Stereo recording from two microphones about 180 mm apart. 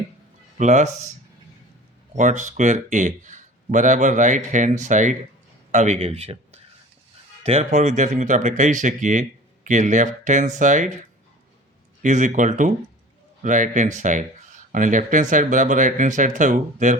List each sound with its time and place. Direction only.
0.6 s speech: 40° right (ahead or behind)
2.1 s speech: 45° right (ahead or behind)
12.0 s speech: 45° right (ahead or behind)